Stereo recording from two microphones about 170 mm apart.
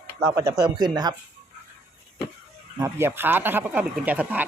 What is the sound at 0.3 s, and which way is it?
Speech, 20° right (ahead or behind).